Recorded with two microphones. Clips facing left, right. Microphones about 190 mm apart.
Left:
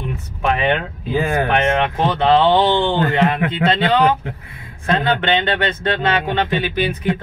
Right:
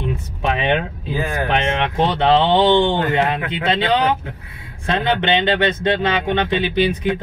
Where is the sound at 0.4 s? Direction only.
20° right (ahead or behind).